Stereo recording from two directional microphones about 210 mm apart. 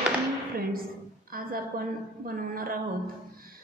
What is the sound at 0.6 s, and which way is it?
A woman's voice, 45° right (ahead or behind).